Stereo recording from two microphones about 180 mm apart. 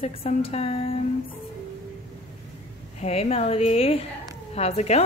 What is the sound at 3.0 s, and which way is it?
A woman's voice, 35° left (ahead or behind).